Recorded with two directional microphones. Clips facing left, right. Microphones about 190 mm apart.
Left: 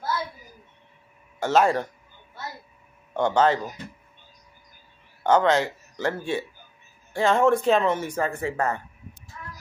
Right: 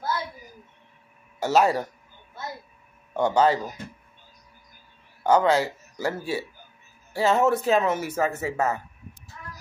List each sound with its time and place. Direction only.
1.4 s speech: 10° right (ahead or behind)
3.2 s speech: 10° right (ahead or behind)
5.2 s speech: 10° right (ahead or behind)